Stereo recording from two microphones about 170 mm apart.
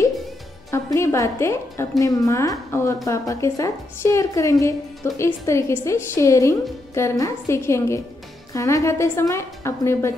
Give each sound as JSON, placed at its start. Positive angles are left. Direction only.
{"t": 0.7, "sound": "a woman's voice", "side_deg": 15}